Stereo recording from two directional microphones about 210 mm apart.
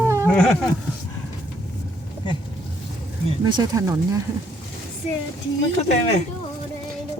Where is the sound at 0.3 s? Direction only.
Centre (ahead or behind).